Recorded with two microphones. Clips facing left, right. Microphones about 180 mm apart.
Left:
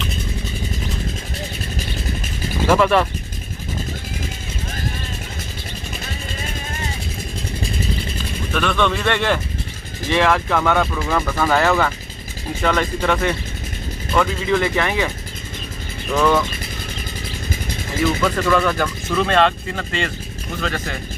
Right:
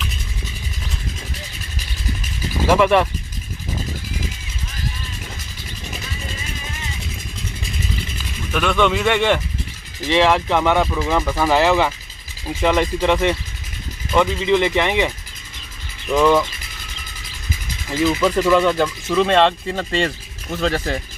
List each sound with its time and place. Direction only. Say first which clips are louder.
2.6 s speech: right 1 dB; 15° right (ahead or behind)
6.0 s vehicle: left 2 dB; 50° left (ahead or behind)
8.5 s speech: right 2 dB; 10° right (ahead or behind)
14.5 s speech: right 3 dB; 20° right (ahead or behind)
16.2 s speech: right 2 dB; 10° right (ahead or behind)
18.2 s speech: right 4 dB; 20° right (ahead or behind)